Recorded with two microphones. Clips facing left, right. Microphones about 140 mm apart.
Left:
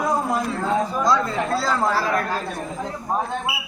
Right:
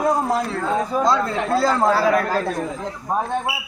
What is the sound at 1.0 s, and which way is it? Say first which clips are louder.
Speech: right 1 dB; 50° right (ahead or behind).